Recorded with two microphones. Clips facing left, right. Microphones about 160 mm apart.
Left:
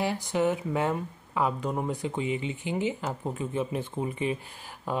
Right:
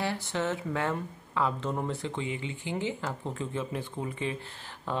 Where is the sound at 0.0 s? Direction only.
15° left (ahead or behind).